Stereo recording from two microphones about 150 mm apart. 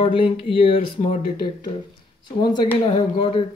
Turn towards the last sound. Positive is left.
turn(degrees=35)  # may be behind; listen again after turning